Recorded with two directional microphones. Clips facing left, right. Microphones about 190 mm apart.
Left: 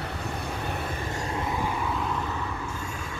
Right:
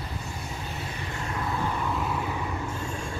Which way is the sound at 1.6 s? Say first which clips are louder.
Even; centre (ahead or behind).